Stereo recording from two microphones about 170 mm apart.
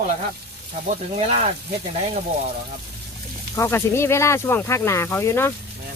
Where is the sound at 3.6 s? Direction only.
15° left (ahead or behind).